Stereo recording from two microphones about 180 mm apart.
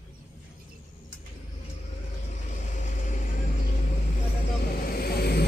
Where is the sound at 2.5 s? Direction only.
45° left (ahead or behind).